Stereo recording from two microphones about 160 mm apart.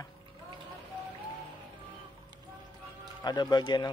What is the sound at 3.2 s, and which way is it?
Speech, 25° left (ahead or behind).